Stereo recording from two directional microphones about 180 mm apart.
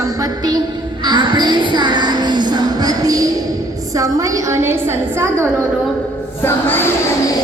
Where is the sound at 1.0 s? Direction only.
25° right (ahead or behind).